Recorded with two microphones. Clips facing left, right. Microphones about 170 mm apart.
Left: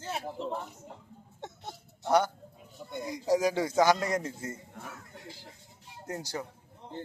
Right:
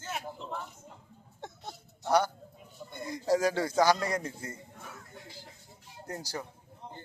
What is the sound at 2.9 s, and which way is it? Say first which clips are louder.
A man's voice: left 1 dB; 15° left (ahead or behind).